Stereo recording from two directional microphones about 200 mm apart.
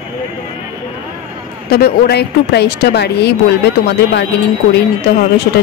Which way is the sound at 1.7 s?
55° left (ahead or behind).